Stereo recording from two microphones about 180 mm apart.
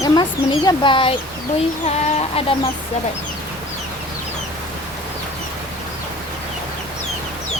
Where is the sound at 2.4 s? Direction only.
30° left (ahead or behind).